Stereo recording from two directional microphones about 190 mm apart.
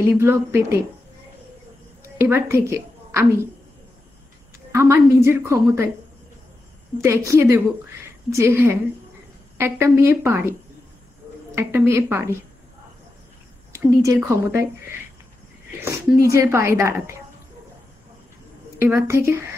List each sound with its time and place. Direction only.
0.1 s speech: 10° right (ahead or behind)
2.1 s a woman's voice: 10° right (ahead or behind)
4.7 s speech: 15° right (ahead or behind)
7.0 s speech: 15° right (ahead or behind)
11.5 s speech: 15° right (ahead or behind)
13.7 s speech: 15° right (ahead or behind)
15.8 s speech: 15° right (ahead or behind)
18.8 s speech: 15° right (ahead or behind)